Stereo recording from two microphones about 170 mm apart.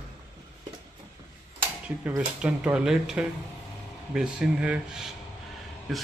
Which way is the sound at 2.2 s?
5° right (ahead or behind).